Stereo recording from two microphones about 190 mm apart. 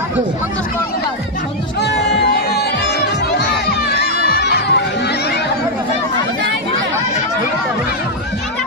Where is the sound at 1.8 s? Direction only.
65° left (ahead or behind).